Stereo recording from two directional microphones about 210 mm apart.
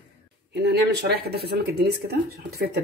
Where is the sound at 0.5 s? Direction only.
55° right (ahead or behind).